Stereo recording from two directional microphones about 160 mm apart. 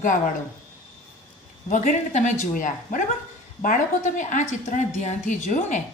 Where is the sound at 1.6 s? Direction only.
50° left (ahead or behind).